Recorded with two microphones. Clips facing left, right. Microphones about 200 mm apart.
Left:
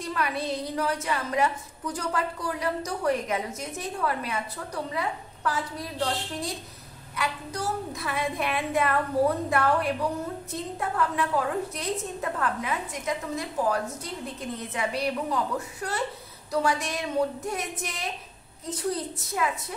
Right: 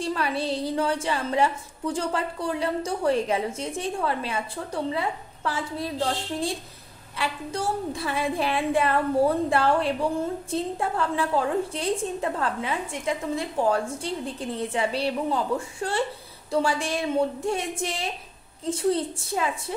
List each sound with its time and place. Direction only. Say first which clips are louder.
0.0 s a woman's voice: right 3 dB; 30° right (ahead or behind)